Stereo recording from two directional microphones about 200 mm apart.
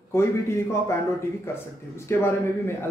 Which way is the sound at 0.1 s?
15° left (ahead or behind).